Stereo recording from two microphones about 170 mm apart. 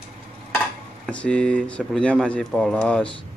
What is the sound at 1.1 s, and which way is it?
Speech, 5° left (ahead or behind).